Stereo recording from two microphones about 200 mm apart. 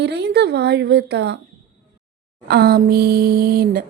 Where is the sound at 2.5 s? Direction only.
50° right (ahead or behind).